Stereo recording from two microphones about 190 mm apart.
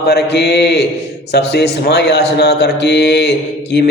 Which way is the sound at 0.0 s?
60° left (ahead or behind).